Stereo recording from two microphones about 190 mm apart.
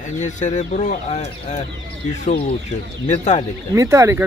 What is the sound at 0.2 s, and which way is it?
Speech, 40° left (ahead or behind).